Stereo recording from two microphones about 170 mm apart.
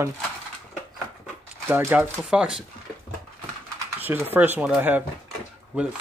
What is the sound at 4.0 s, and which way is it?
Speech, 10° right (ahead or behind).